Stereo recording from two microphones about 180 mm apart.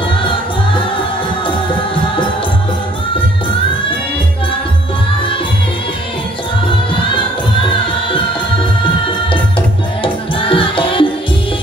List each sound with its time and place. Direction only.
10.0 s music: 30° left (ahead or behind)